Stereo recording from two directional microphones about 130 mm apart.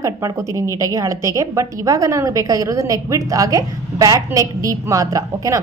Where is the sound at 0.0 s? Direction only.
25° right (ahead or behind).